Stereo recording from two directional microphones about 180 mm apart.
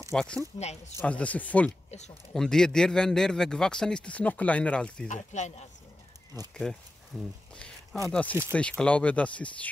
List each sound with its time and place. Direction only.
0.1 s speech: 5° left (ahead or behind)
1.9 s speech: 40° left (ahead or behind)
2.3 s a man's voice: 5° left (ahead or behind)
5.0 s speech: 45° left (ahead or behind)
6.5 s a man's voice: 5° left (ahead or behind)
7.5 s a sound: 5° left (ahead or behind)
8.1 s speech: 5° left (ahead or behind)